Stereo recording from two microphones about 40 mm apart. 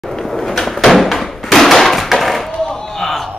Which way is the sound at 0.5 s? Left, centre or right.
Centre.